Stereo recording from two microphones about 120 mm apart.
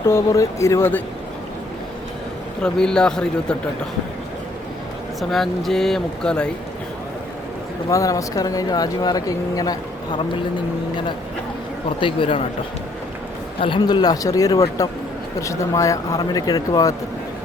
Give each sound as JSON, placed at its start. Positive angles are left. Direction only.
{"t": 0.1, "sound": "speech", "side_deg": 25}
{"t": 2.6, "sound": "speech", "side_deg": 5}
{"t": 5.3, "sound": "speech", "side_deg": 0}
{"t": 7.9, "sound": "speech", "side_deg": 30}
{"t": 11.9, "sound": "speech", "side_deg": 45}
{"t": 13.6, "sound": "speech", "side_deg": 40}